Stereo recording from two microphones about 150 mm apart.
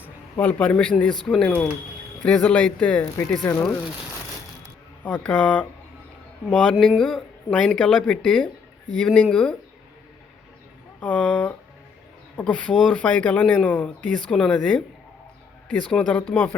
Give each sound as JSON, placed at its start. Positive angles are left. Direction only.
{"t": 0.3, "sound": "speech", "side_deg": 10}
{"t": 3.4, "sound": "speech", "side_deg": 20}
{"t": 5.0, "sound": "speech", "side_deg": 10}
{"t": 11.0, "sound": "speech", "side_deg": 10}